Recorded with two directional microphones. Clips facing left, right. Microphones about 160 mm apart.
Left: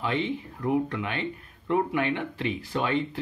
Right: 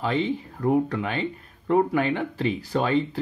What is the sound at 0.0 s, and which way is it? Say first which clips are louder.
Speech: right 3 dB; 35° right (ahead or behind).